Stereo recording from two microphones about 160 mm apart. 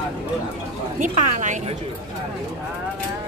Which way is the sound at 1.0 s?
50° right (ahead or behind).